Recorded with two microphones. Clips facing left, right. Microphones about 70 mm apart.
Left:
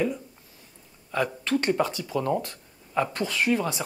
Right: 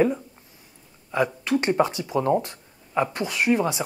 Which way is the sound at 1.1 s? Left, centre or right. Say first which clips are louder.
Right 3 dB; centre.